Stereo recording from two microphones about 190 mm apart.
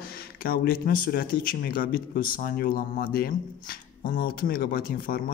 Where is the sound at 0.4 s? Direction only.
50° left (ahead or behind).